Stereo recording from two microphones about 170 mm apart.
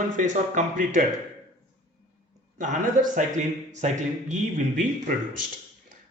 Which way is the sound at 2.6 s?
50° right (ahead or behind).